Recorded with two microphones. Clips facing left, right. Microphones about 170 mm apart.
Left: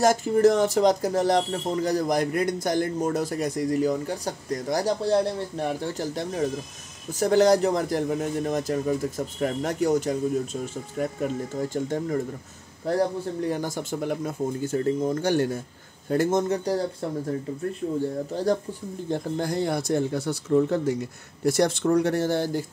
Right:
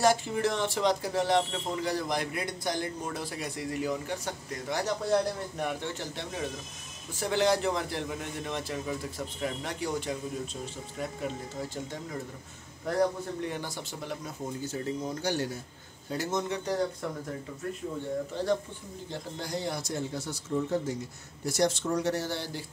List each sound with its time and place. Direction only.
0.0 s speech: 45° left (ahead or behind)
12.9 s a man's voice: 30° left (ahead or behind)
13.5 s speech: 45° left (ahead or behind)
19.0 s speech: 50° left (ahead or behind)